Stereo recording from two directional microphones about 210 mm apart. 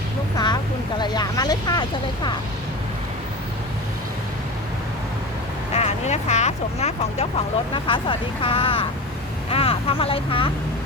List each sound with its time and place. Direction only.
0.3 s speech: 20° left (ahead or behind)
5.7 s speech: 30° left (ahead or behind)